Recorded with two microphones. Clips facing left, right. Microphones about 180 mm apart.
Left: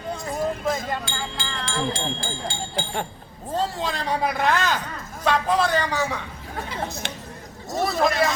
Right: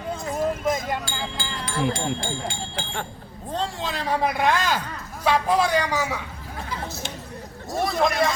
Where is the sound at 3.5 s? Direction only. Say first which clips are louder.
Left 2 dB; centre (ahead or behind).